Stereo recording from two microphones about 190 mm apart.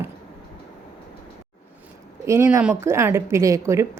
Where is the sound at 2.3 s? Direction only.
15° right (ahead or behind).